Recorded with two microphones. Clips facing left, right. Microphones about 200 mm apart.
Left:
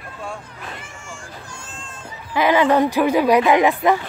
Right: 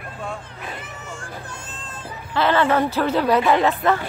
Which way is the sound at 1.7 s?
35° right (ahead or behind).